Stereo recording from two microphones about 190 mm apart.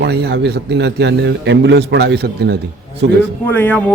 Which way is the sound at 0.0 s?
55° right (ahead or behind).